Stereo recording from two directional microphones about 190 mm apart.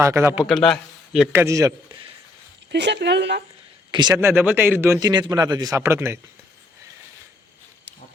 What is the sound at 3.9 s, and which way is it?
Speech, 25° right (ahead or behind).